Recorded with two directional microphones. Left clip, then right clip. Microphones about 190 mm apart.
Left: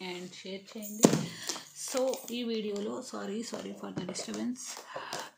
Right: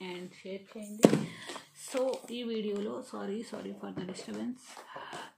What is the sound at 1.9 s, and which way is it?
Speech, centre (ahead or behind).